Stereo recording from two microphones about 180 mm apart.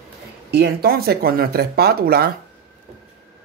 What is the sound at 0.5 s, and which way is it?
Speech, 60° right (ahead or behind).